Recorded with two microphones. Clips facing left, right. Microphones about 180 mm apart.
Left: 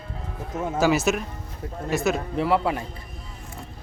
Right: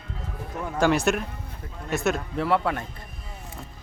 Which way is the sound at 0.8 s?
5° left (ahead or behind).